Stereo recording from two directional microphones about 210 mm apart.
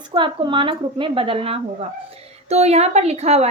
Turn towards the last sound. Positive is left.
turn(degrees=-30)  # may be behind; listen again after turning